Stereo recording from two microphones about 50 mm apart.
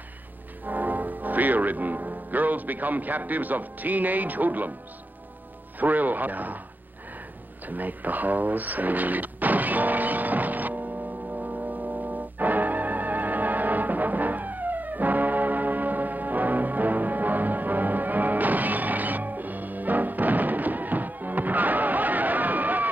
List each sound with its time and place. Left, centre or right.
0.7 s speech: right
5.8 s speech: right
7.6 s a sound: right